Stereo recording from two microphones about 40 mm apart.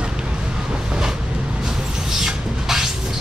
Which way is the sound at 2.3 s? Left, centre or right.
Centre.